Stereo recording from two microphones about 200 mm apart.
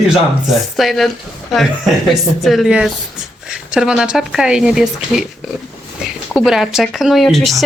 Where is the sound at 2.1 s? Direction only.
Centre (ahead or behind).